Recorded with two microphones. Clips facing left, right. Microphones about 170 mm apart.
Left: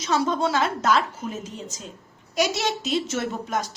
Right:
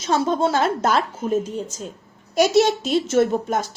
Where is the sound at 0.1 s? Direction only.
50° right (ahead or behind).